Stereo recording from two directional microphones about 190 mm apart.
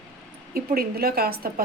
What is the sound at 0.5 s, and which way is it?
Speech, 55° right (ahead or behind).